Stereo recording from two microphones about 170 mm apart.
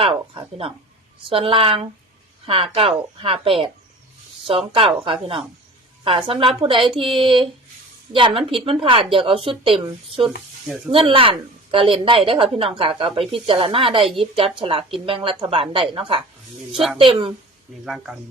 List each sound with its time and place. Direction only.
0.0 s a woman's voice: 35° right (ahead or behind)
10.9 s a woman's voice: 30° right (ahead or behind)
17.8 s speech: 5° right (ahead or behind)